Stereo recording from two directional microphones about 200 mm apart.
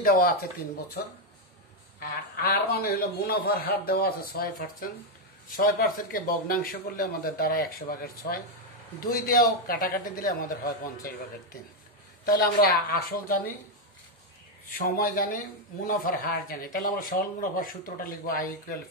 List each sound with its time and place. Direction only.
0.0 s a man's voice: 45° left (ahead or behind)
2.0 s a man's voice: 50° left (ahead or behind)
12.3 s a man's voice: 50° left (ahead or behind)
14.7 s a man's voice: 45° left (ahead or behind)